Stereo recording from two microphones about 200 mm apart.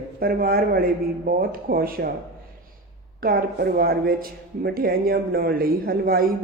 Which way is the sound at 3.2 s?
50° right (ahead or behind).